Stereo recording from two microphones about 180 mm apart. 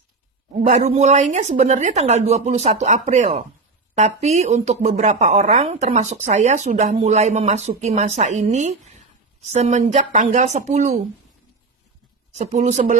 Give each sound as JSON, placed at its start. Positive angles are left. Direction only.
{"t": 0.6, "sound": "speech", "side_deg": -40}
{"t": 12.4, "sound": "speech", "side_deg": -40}